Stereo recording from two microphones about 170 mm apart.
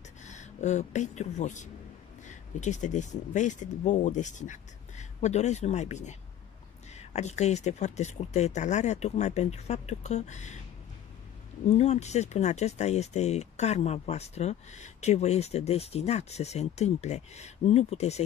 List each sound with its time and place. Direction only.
0.2 s speech: 45° left (ahead or behind)
11.6 s speech: 40° left (ahead or behind)